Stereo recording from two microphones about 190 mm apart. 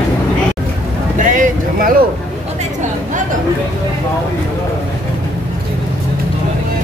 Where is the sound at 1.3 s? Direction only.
45° right (ahead or behind).